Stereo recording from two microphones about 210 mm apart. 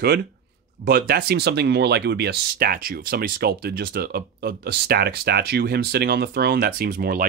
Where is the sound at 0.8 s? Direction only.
50° right (ahead or behind).